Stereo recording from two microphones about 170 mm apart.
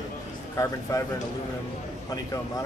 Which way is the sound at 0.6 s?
20° left (ahead or behind).